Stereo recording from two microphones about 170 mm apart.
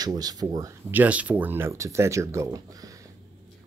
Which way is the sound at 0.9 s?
10° right (ahead or behind).